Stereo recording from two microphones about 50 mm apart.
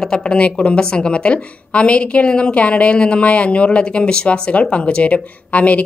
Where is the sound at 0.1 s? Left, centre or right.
Centre.